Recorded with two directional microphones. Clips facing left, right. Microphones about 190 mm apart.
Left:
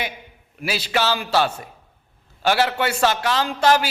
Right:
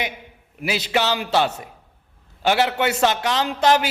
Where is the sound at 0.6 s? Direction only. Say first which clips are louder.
Right 1 dB; 20° right (ahead or behind).